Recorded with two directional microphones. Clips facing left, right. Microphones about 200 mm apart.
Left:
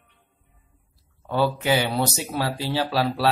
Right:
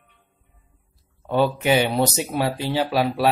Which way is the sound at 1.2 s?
20° right (ahead or behind).